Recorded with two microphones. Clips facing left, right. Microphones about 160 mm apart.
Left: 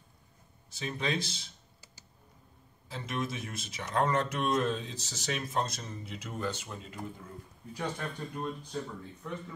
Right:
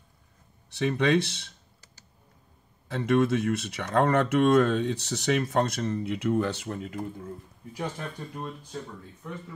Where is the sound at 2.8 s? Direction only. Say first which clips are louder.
Right 12 dB; 65° right (ahead or behind).